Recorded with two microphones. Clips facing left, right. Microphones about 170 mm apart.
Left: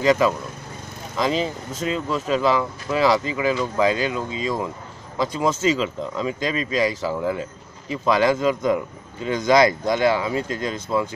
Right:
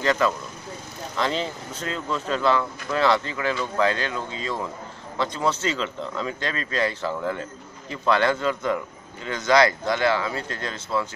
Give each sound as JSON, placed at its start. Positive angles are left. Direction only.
{"t": 0.0, "sound": "a man's voice", "side_deg": 10}